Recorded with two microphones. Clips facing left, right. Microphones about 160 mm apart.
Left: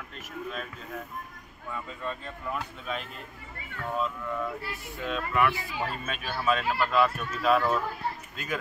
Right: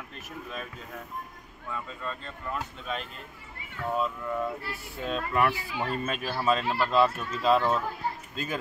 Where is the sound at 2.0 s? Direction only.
10° left (ahead or behind).